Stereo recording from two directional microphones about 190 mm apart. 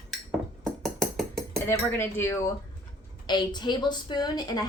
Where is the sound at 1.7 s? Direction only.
10° left (ahead or behind).